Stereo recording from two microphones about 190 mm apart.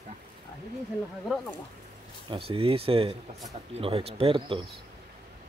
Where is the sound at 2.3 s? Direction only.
30° right (ahead or behind).